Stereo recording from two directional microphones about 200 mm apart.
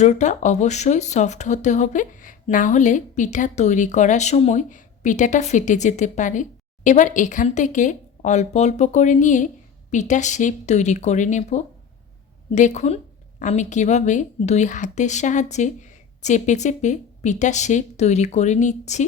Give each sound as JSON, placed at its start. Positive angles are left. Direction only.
{"t": 0.0, "sound": "speech", "side_deg": 35}